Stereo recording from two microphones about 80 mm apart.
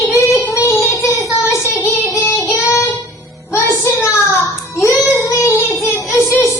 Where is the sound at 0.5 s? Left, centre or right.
Left.